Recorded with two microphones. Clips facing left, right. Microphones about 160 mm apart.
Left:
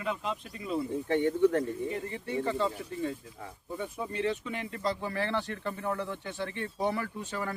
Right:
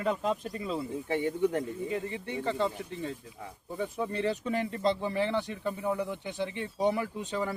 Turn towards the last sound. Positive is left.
turn(degrees=-15)  # may be behind; listen again after turning